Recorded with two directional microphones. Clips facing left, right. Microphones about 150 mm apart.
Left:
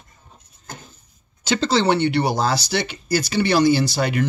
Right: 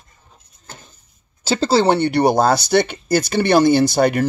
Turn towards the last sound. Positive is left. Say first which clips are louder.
# right 6 dB
turn(degrees=-50)  # may be behind; listen again after turning